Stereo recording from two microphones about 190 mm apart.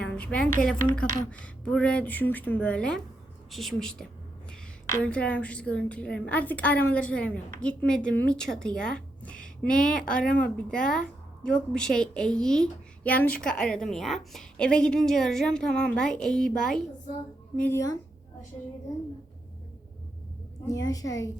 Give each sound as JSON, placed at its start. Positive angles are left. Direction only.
{"t": 0.0, "sound": "a woman's voice", "side_deg": 5}
{"t": 5.0, "sound": "a woman's voice", "side_deg": 5}
{"t": 17.6, "sound": "a woman's voice", "side_deg": 15}
{"t": 20.7, "sound": "a woman's voice", "side_deg": 20}